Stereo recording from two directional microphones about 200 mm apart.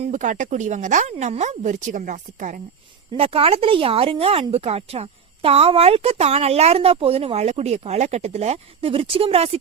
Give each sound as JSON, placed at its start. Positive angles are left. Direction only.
{"t": 0.1, "sound": "speech", "side_deg": -40}
{"t": 3.1, "sound": "speech", "side_deg": -30}